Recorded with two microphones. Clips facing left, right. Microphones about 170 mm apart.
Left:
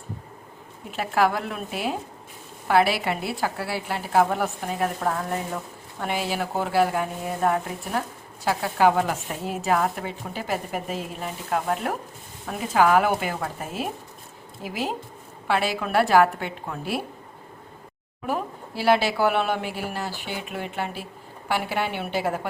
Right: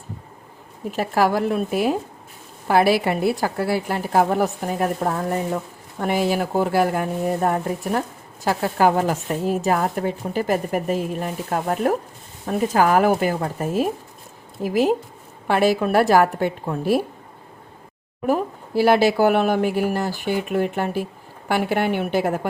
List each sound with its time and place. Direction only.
0.9 s speech: 40° right (ahead or behind)
18.3 s speech: 45° right (ahead or behind)